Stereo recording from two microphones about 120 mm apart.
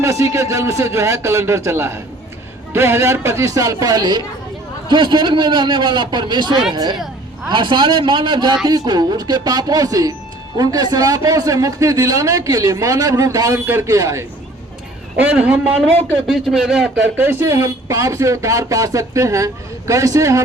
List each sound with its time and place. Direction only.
0.0 s a man's voice: 25° right (ahead or behind)
15.2 s a man's voice: 10° right (ahead or behind)
16.2 s speech: centre (ahead or behind)
17.2 s speech: 20° right (ahead or behind)